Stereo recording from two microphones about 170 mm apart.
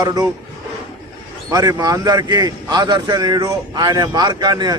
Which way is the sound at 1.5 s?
20° right (ahead or behind).